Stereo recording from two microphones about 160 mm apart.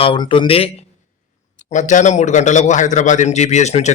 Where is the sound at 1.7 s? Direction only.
50° left (ahead or behind).